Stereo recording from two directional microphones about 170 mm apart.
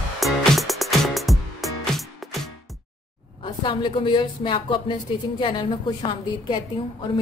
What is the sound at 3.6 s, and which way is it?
Speech, 30° left (ahead or behind).